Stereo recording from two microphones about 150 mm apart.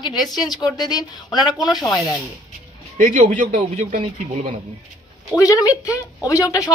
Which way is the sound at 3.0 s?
65° right (ahead or behind).